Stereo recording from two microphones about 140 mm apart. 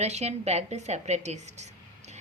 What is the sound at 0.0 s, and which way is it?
A woman's voice, 50° right (ahead or behind).